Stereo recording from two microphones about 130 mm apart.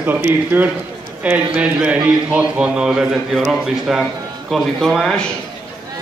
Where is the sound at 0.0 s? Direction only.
15° right (ahead or behind); by 5.2 s centre (ahead or behind).